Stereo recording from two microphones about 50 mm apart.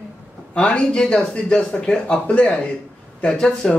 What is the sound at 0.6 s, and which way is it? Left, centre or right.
Speech, left.